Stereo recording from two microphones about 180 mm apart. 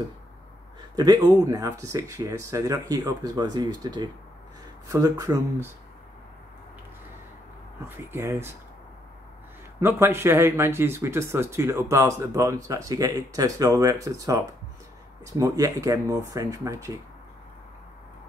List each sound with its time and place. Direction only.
0.9 s speech: 20° right (ahead or behind)
7.9 s speech: 15° right (ahead or behind)
9.8 s speech: 15° right (ahead or behind)